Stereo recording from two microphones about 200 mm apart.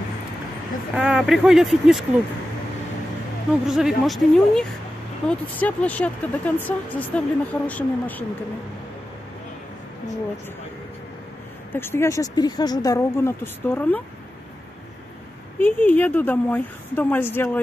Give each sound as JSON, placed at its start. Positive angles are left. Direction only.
{"t": 0.9, "sound": "speech", "side_deg": -5}
{"t": 3.6, "sound": "speech", "side_deg": 0}
{"t": 11.7, "sound": "speech", "side_deg": 10}
{"t": 15.6, "sound": "speech", "side_deg": 10}